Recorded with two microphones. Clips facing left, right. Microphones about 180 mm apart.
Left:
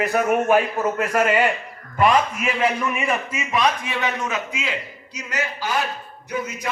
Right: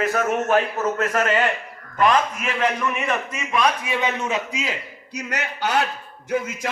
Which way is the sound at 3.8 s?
15° right (ahead or behind).